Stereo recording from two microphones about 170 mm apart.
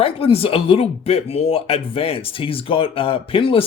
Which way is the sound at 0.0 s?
35° left (ahead or behind).